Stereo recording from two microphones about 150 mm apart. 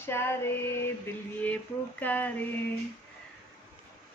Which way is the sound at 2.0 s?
10° left (ahead or behind).